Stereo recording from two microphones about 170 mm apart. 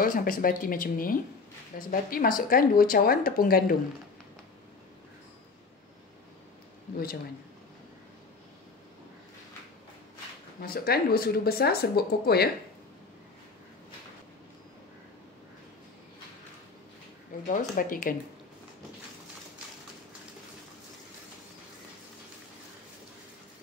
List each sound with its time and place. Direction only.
0.0 s speech: 55° left (ahead or behind)
10.6 s speech: 65° left (ahead or behind)
17.5 s speech: 55° left (ahead or behind)